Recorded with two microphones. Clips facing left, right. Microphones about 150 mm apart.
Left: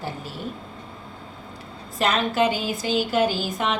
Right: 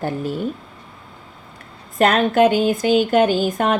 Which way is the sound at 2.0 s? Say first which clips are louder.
Right 7 dB; 55° right (ahead or behind).